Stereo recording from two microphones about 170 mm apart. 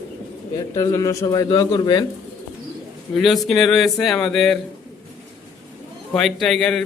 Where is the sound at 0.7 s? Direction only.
20° left (ahead or behind).